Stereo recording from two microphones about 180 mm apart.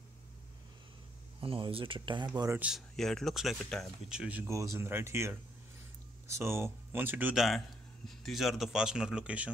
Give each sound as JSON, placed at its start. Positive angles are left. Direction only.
{"t": 1.4, "sound": "speech", "side_deg": -30}
{"t": 2.6, "sound": "speech", "side_deg": 0}